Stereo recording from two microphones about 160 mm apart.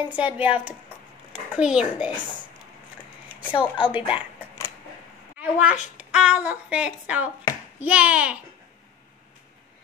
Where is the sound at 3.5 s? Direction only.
30° left (ahead or behind).